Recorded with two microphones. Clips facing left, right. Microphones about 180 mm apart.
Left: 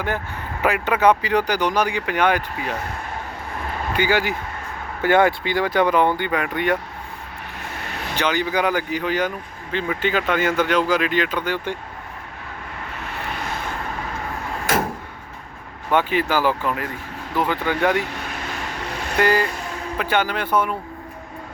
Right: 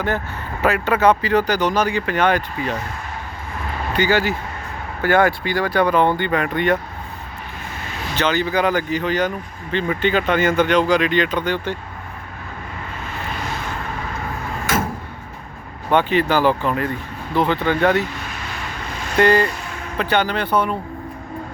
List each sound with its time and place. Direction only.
0.6 s speech: 15° left (ahead or behind)
3.9 s speech: 10° left (ahead or behind)
8.1 s speech: 15° left (ahead or behind)
13.1 s vehicle: 65° left (ahead or behind)
15.9 s speech: 5° left (ahead or behind)
18.9 s vehicle: 65° left (ahead or behind)
19.1 s speech: 5° left (ahead or behind)